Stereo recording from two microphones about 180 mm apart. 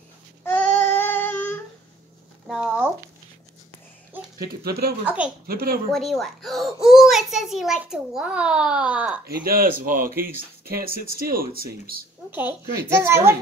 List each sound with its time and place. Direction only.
0.4 s child singing: 10° left (ahead or behind)
2.4 s a sound: 5° right (ahead or behind)
4.6 s speech: 60° right (ahead or behind)
5.0 s a child's voice: 5° right (ahead or behind)
5.5 s speech: 55° right (ahead or behind)
5.9 s a child's voice: centre (ahead or behind)
9.2 s speech: 55° right (ahead or behind)
12.3 s a woman's voice: 10° right (ahead or behind)